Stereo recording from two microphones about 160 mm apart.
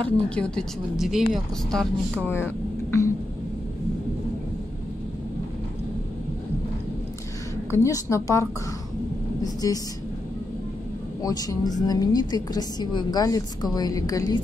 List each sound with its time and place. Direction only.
0.0 s speech: 5° left (ahead or behind)
2.2 s speech: 15° left (ahead or behind)
7.7 s a woman's voice: 20° left (ahead or behind)
11.2 s a woman's voice: 25° left (ahead or behind)